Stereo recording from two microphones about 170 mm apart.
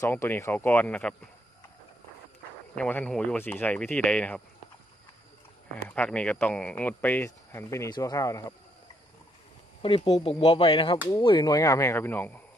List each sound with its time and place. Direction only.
0.0 s speech: 15° left (ahead or behind)
2.7 s speech: 5° left (ahead or behind)
5.8 s speech: 10° left (ahead or behind)
9.8 s speech: 30° left (ahead or behind); by 12.4 s 10° left (ahead or behind)